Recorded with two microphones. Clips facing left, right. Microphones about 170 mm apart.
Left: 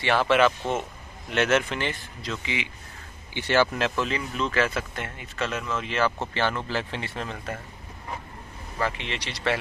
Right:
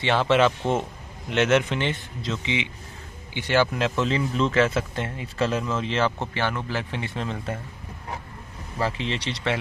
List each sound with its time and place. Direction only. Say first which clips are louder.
0.0 s speech: right 1 dB; 20° right (ahead or behind)
8.8 s speech: right 3 dB; 30° right (ahead or behind)